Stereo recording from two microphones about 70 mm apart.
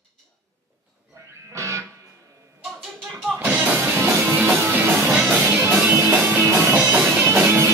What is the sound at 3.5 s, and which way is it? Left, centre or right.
Music, right.